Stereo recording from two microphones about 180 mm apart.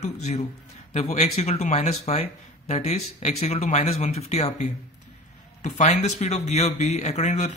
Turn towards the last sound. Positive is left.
turn(degrees=40)  # may be behind; listen again after turning